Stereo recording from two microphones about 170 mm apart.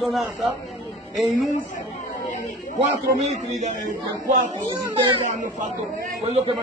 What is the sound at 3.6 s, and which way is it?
Speech, 50° right (ahead or behind).